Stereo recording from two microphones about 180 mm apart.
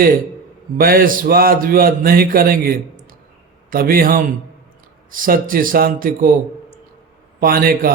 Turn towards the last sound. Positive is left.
turn(degrees=-55)  # may be behind; listen again after turning